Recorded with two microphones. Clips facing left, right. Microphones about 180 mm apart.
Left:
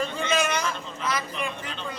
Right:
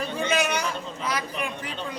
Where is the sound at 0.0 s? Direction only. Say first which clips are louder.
Even; 10° right (ahead or behind).